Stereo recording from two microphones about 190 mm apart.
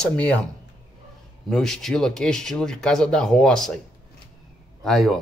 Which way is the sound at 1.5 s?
Centre (ahead or behind).